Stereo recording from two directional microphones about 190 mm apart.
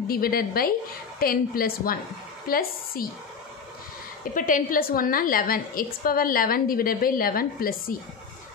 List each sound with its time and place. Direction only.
0.1 s a woman's voice: 50° left (ahead or behind)
4.2 s a woman's voice: 45° left (ahead or behind)